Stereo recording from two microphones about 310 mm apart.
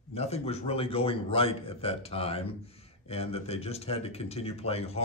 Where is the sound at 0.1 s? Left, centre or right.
Centre.